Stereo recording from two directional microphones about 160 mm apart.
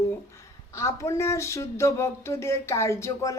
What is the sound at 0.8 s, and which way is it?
A woman's voice, 20° left (ahead or behind).